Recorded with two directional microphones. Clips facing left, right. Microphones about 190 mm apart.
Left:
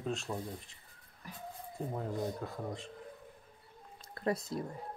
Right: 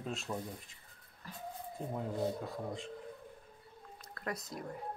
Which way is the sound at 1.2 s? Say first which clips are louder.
Even; 15° left (ahead or behind).